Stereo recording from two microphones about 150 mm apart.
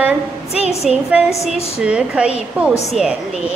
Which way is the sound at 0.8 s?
5° right (ahead or behind).